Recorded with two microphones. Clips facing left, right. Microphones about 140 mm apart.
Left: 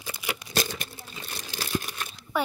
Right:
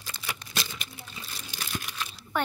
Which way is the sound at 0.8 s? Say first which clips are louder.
Left 3 dB; 45° left (ahead or behind).